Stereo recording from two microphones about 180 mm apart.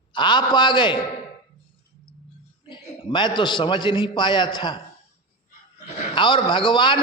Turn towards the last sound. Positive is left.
turn(degrees=25)  # may be behind; listen again after turning